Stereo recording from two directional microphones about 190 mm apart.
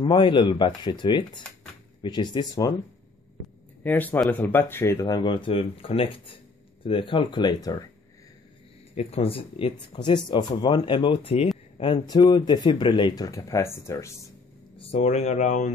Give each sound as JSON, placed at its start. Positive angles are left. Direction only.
{"t": 0.0, "sound": "speech", "side_deg": 25}
{"t": 3.8, "sound": "speech", "side_deg": 10}
{"t": 8.9, "sound": "speech", "side_deg": 30}
{"t": 14.8, "sound": "speech", "side_deg": 35}